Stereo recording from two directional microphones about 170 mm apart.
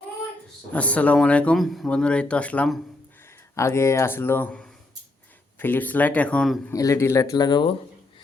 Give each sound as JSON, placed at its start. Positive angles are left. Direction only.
{"t": 0.7, "sound": "speech", "side_deg": 10}
{"t": 6.7, "sound": "speech", "side_deg": 20}